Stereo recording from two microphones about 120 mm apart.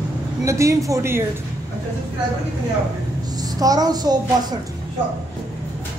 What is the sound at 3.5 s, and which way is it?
A child's voice, 30° right (ahead or behind).